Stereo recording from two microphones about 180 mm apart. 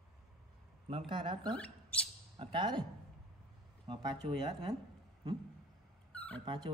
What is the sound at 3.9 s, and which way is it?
Speech, 25° right (ahead or behind).